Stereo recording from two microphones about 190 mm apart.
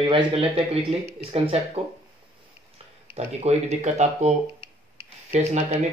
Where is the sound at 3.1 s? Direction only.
35° right (ahead or behind).